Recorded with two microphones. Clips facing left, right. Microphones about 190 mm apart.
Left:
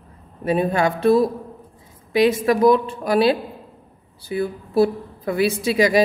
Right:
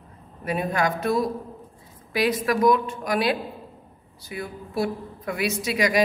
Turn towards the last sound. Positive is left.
turn(degrees=30)  # may be behind; listen again after turning